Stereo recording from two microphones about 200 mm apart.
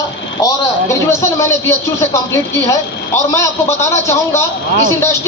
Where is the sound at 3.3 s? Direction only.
15° left (ahead or behind).